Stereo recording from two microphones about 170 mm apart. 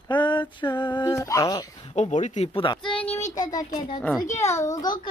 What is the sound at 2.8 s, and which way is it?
A child's voice, 5° left (ahead or behind).